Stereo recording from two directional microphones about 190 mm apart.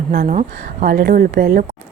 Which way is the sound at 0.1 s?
55° right (ahead or behind).